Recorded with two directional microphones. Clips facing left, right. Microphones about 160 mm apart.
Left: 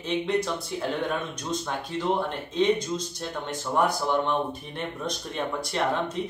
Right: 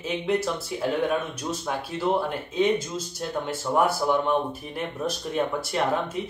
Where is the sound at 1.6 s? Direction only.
5° right (ahead or behind).